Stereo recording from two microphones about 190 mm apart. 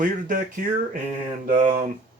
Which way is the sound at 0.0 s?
45° right (ahead or behind).